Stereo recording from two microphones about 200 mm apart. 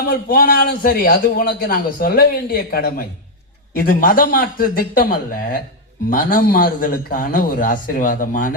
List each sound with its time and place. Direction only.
0.1 s a man's voice: 45° left (ahead or behind)